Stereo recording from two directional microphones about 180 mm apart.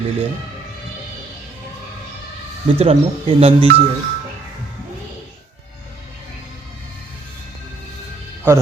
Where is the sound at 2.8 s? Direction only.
35° right (ahead or behind).